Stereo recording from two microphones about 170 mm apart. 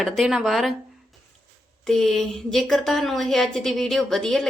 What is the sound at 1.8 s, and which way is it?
Speech, centre (ahead or behind).